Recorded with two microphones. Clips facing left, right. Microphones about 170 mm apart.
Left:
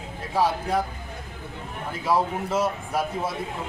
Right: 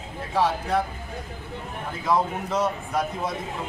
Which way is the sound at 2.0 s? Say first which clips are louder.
Even; 10° left (ahead or behind).